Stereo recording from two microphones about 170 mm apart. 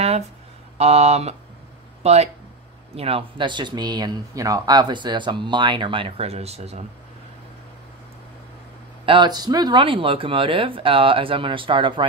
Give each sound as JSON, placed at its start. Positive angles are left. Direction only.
{"t": 0.7, "sound": "speech", "side_deg": -40}
{"t": 9.0, "sound": "speech", "side_deg": -30}